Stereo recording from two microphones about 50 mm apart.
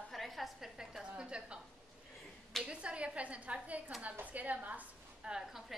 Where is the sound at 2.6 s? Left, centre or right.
Right.